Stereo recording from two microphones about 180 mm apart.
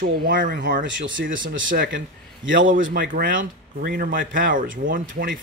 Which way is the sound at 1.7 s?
50° right (ahead or behind).